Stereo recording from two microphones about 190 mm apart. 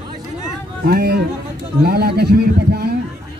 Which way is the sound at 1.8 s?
55° right (ahead or behind).